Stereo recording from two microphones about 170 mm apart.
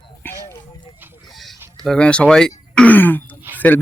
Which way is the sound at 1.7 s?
5° left (ahead or behind).